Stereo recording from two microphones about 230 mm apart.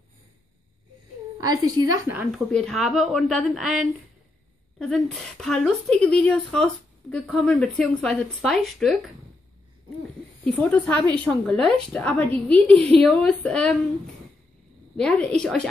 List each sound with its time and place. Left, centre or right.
1.4 s a woman's voice: centre
10.4 s a woman's voice: centre
15.0 s a woman's voice: centre